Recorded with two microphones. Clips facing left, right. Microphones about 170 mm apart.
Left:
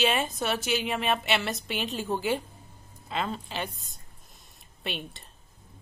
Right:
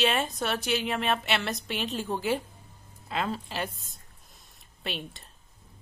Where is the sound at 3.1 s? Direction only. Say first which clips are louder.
Right 1 dB; centre (ahead or behind).